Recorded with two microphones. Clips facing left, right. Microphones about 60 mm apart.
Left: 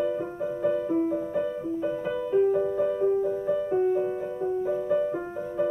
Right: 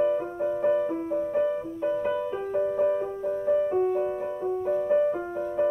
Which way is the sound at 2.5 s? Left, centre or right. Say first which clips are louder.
Right 1 dB; right.